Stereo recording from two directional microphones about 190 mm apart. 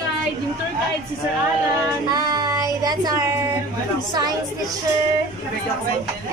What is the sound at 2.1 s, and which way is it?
Child singing, 20° right (ahead or behind).